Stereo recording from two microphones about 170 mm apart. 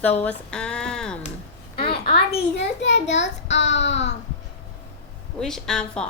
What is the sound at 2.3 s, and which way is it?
Child singing, 90° left.